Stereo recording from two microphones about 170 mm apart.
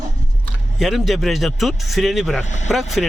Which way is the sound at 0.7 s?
Centre (ahead or behind).